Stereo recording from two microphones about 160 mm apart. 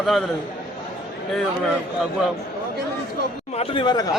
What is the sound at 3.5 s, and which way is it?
Speech, 35° left (ahead or behind).